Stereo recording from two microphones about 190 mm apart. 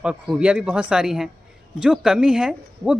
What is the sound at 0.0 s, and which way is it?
Speech, 5° right (ahead or behind).